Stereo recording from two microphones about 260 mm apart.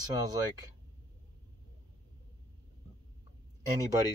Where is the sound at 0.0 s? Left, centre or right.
Centre.